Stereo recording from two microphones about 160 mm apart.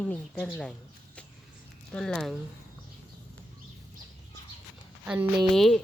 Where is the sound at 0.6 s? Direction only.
5° left (ahead or behind).